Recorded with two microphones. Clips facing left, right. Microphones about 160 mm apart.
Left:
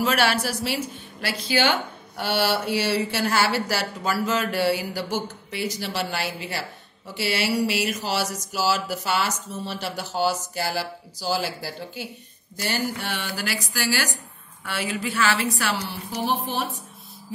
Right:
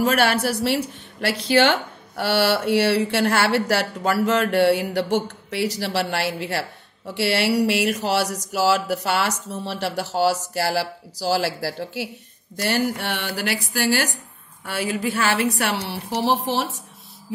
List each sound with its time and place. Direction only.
0.0 s speech: 50° right (ahead or behind)
0.7 s speech: 65° right (ahead or behind)
7.2 s a sound: 65° right (ahead or behind)
12.6 s speech: 65° right (ahead or behind)
14.6 s speech: 45° right (ahead or behind)
15.5 s speech: 60° right (ahead or behind); by 16.3 s 80° right